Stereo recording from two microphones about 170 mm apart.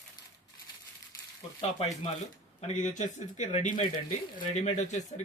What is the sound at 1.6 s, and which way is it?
Speech, 35° left (ahead or behind).